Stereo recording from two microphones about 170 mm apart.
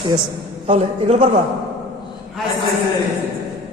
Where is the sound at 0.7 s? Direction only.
35° right (ahead or behind).